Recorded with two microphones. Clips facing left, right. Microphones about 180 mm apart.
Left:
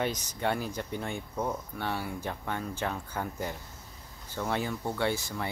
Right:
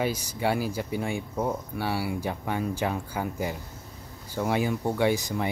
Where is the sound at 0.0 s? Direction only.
10° right (ahead or behind).